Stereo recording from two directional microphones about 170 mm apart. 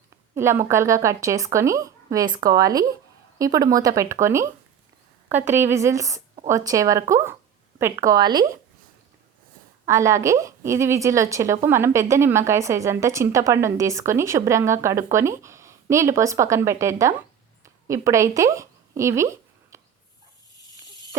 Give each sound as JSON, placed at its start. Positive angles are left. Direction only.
{"t": 0.3, "sound": "a woman's voice", "side_deg": -15}
{"t": 9.8, "sound": "a woman's voice", "side_deg": -15}